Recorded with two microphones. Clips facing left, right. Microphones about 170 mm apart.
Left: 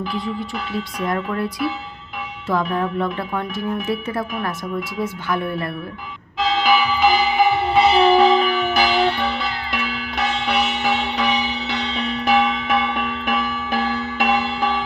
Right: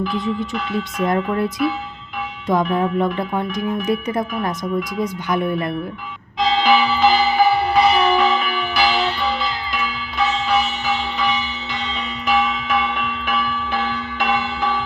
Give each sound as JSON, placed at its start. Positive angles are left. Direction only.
{"t": 0.9, "sound": "speech", "side_deg": -25}
{"t": 6.6, "sound": "music", "side_deg": 10}
{"t": 13.7, "sound": "music", "side_deg": 40}